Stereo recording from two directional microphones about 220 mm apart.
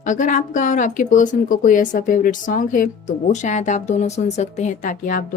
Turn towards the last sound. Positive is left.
turn(degrees=35)  # may be behind; listen again after turning